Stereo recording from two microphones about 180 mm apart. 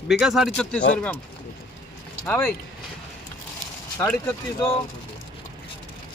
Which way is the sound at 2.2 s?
10° left (ahead or behind).